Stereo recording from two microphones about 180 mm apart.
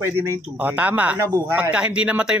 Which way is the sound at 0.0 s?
15° right (ahead or behind).